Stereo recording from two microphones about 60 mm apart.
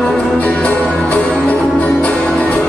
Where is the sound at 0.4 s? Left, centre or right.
Left.